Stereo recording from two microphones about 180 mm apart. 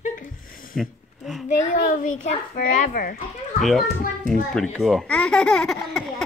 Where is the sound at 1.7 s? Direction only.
50° left (ahead or behind).